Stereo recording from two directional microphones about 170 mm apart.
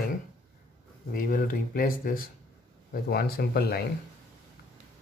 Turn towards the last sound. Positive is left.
turn(degrees=65)  # may be behind; listen again after turning